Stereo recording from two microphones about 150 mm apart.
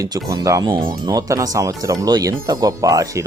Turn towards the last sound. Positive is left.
turn(degrees=-20)  # may be behind; listen again after turning